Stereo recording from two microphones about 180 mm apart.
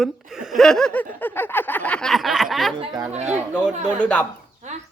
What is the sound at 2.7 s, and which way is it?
Speech, 20° right (ahead or behind).